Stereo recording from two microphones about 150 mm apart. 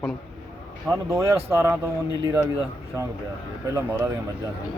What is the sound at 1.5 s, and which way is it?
Speech, 15° right (ahead or behind).